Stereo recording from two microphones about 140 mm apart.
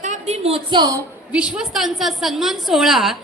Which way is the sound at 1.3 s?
5° right (ahead or behind).